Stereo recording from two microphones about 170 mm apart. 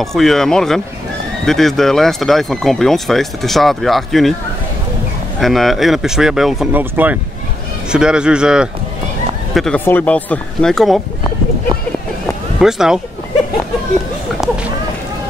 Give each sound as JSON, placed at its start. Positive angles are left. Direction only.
{"t": 0.0, "sound": "speech", "side_deg": 0}
{"t": 5.4, "sound": "speech", "side_deg": 0}
{"t": 12.5, "sound": "speech", "side_deg": -5}